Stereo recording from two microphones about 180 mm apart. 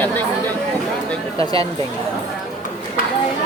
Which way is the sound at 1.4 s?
20° left (ahead or behind).